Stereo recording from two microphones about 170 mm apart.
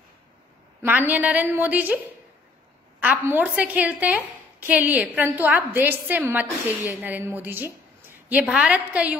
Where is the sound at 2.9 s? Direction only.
10° right (ahead or behind).